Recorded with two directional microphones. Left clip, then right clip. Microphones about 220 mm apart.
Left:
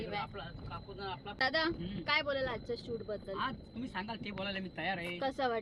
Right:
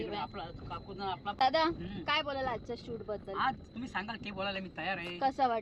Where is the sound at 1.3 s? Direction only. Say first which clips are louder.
Right 4 dB; 20° right (ahead or behind).